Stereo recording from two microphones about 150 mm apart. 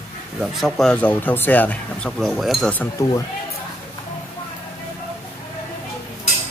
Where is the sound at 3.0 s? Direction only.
20° left (ahead or behind).